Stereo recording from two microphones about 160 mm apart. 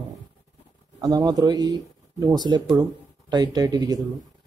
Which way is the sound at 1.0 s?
25° right (ahead or behind).